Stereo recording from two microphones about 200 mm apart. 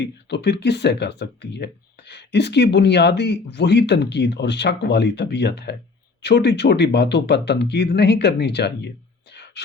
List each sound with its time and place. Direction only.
0.0 s speech: 55° left (ahead or behind)